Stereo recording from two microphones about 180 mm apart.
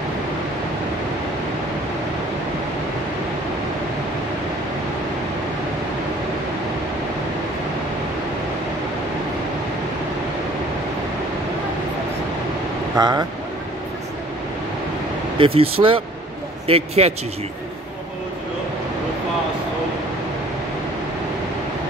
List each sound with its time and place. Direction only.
12.9 s speech: 20° right (ahead or behind)
15.3 s speech: 30° right (ahead or behind)